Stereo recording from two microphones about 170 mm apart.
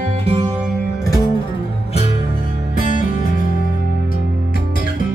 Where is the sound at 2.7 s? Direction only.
50° left (ahead or behind).